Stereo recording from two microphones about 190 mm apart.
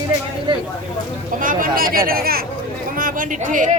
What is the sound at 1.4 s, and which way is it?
Speech, 45° right (ahead or behind).